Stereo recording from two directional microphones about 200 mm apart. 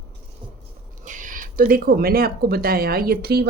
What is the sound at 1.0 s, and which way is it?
Speech, 40° right (ahead or behind).